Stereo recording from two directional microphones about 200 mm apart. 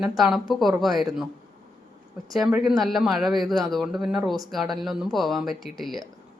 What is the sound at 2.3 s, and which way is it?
Speech, centre (ahead or behind).